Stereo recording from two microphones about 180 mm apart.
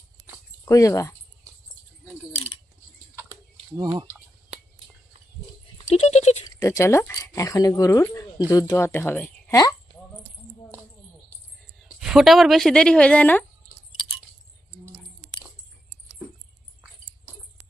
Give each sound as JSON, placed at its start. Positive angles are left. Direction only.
{"t": 0.6, "sound": "speech", "side_deg": 20}
{"t": 3.8, "sound": "speech", "side_deg": -25}
{"t": 5.9, "sound": "speech", "side_deg": 40}
{"t": 6.5, "sound": "speech", "side_deg": 20}
{"t": 11.8, "sound": "speech", "side_deg": 0}